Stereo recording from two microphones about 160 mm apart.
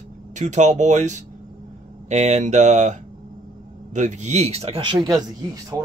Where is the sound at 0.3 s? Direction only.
50° right (ahead or behind).